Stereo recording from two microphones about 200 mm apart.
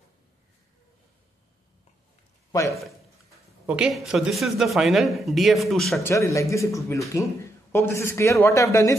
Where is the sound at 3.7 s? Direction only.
Centre (ahead or behind).